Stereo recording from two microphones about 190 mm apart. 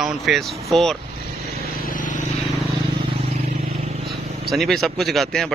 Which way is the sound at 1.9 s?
45° left (ahead or behind).